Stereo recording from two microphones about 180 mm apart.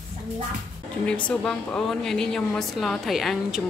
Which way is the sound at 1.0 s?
5° left (ahead or behind).